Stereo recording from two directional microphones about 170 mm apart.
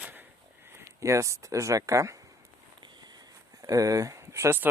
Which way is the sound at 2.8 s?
25° right (ahead or behind).